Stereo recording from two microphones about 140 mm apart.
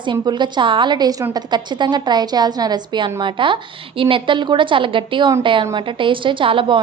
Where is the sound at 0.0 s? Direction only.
35° right (ahead or behind).